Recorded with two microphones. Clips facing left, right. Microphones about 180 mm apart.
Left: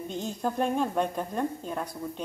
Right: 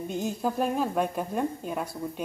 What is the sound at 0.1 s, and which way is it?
A woman's voice, 5° right (ahead or behind).